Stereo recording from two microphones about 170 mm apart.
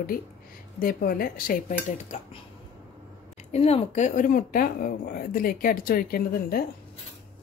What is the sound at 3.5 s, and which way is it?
Speech, 35° left (ahead or behind).